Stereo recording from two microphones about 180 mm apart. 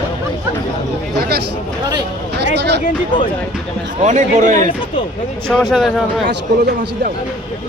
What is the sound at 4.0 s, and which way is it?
Speech, 45° right (ahead or behind).